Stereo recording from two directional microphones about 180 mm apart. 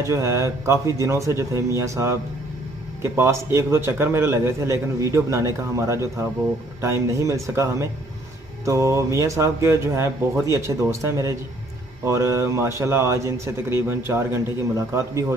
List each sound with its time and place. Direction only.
0.0 s a man's voice: 15° right (ahead or behind)